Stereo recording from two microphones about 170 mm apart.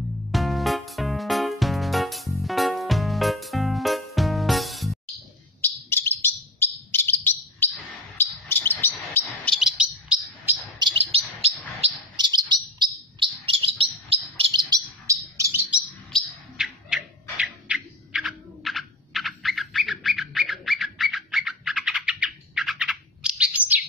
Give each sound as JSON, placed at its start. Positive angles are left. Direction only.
{"t": 0.3, "sound": "music", "side_deg": 0}
{"t": 5.6, "sound": "bird", "side_deg": 10}
{"t": 9.2, "sound": "chirp", "side_deg": 0}
{"t": 10.8, "sound": "chirp", "side_deg": -30}
{"t": 12.2, "sound": "bird", "side_deg": -25}
{"t": 16.1, "sound": "bird", "side_deg": 0}